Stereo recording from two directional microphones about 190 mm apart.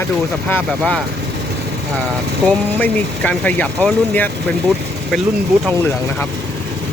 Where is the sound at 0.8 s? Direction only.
5° left (ahead or behind).